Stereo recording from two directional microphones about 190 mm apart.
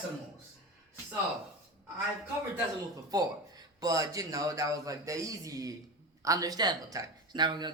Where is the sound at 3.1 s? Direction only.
20° right (ahead or behind).